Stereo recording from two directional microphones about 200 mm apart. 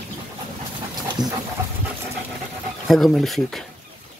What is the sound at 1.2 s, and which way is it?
Dog, 20° right (ahead or behind).